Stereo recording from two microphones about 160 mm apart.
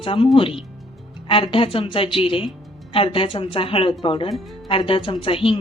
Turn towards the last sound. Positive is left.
turn(degrees=35)  # may be behind; listen again after turning